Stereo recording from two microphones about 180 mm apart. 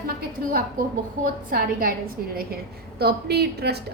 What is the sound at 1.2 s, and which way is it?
A woman's voice, 55° right (ahead or behind).